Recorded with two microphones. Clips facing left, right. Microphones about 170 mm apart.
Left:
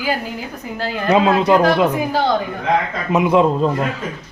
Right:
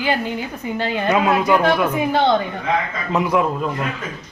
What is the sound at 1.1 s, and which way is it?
Speech, 25° left (ahead or behind).